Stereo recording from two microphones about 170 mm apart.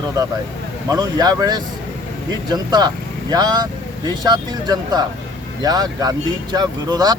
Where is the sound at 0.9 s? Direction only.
20° right (ahead or behind).